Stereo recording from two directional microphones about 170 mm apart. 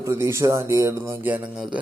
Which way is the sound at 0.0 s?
15° right (ahead or behind).